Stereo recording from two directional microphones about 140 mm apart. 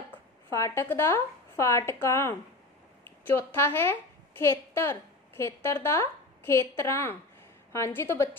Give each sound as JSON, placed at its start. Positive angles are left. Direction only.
{"t": 0.5, "sound": "a woman's voice", "side_deg": 20}